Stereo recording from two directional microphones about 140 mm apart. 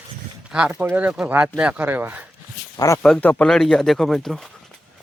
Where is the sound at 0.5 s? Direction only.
10° right (ahead or behind).